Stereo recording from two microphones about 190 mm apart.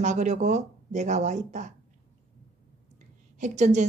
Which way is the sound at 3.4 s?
40° right (ahead or behind).